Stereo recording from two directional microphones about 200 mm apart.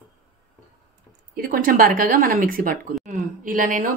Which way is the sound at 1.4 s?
45° right (ahead or behind).